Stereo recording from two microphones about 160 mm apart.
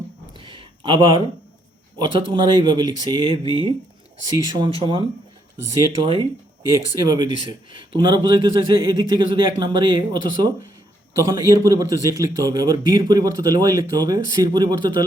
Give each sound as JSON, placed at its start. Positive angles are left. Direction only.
{"t": 0.3, "sound": "a sound", "side_deg": -30}
{"t": 2.0, "sound": "speech", "side_deg": -30}
{"t": 5.7, "sound": "speech", "side_deg": -25}